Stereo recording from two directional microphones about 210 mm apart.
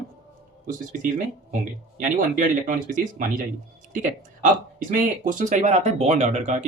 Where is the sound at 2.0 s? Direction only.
40° right (ahead or behind).